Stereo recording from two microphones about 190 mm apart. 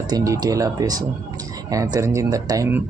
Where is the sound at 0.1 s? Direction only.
20° right (ahead or behind).